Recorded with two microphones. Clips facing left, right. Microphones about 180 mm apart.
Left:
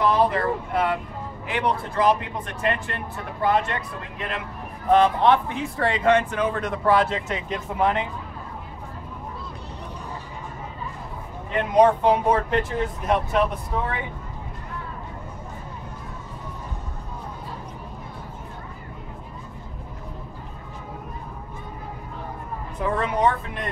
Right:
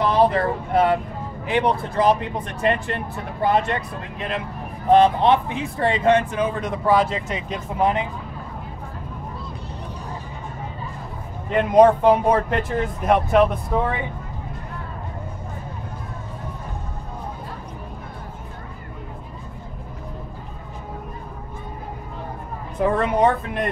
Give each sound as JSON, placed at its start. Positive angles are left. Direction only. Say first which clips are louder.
{"t": 0.0, "sound": "speech", "louder": "right 2 dB", "side_deg": -30}
{"t": 4.8, "sound": "speech", "louder": "right 3 dB", "side_deg": -25}
{"t": 11.7, "sound": "speech", "louder": "right 4 dB", "side_deg": -50}
{"t": 22.8, "sound": "speech", "louder": "right 5 dB", "side_deg": -55}